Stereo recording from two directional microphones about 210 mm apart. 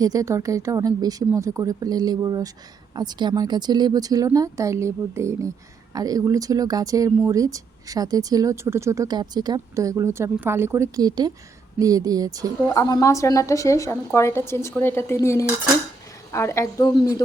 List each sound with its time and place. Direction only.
0.0 s a woman's voice: 15° right (ahead or behind)
12.6 s a woman's voice: 15° left (ahead or behind)